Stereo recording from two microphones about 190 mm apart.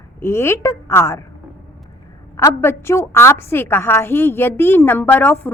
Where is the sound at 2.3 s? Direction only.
15° left (ahead or behind).